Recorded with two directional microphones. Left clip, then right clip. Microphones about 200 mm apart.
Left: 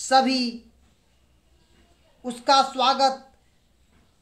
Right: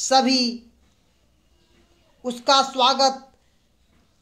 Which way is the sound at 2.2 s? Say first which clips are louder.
Right 1 dB; 25° right (ahead or behind).